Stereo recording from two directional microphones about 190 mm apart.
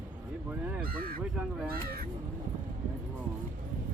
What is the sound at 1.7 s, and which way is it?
Crow, 55° right (ahead or behind).